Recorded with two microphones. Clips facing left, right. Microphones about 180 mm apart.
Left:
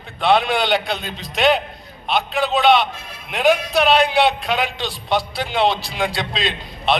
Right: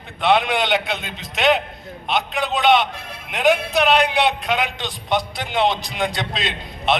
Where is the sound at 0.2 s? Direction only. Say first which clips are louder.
Left 1 dB; 20° right (ahead or behind).